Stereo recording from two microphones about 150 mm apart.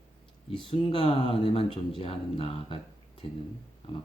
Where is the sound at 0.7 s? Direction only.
35° left (ahead or behind).